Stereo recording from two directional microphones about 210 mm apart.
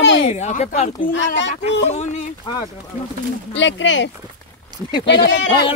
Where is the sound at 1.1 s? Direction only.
60° left (ahead or behind).